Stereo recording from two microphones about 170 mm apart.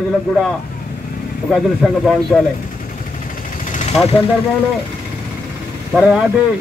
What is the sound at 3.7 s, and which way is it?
Vehicle, 45° left (ahead or behind).